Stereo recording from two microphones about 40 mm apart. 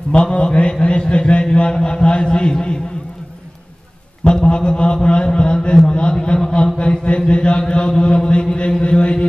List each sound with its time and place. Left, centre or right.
0.1 s a man's voice: left
4.2 s a man's voice: left